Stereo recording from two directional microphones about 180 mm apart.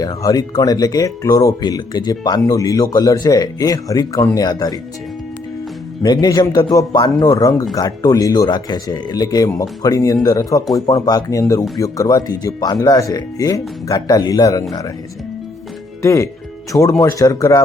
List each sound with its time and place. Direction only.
0.0 s speech: 20° left (ahead or behind)
6.0 s speech: 20° left (ahead or behind)
16.0 s speech: 15° left (ahead or behind)